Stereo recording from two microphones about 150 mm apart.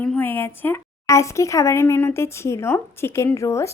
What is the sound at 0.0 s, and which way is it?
A woman's voice, 10° left (ahead or behind).